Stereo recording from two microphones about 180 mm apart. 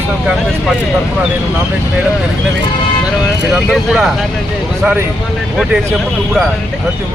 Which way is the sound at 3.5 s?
Centre (ahead or behind).